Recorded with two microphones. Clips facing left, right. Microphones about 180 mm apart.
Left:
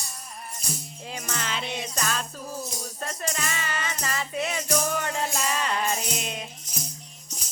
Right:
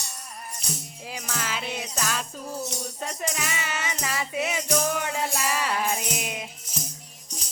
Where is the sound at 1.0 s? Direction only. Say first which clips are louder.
Even; 5° right (ahead or behind).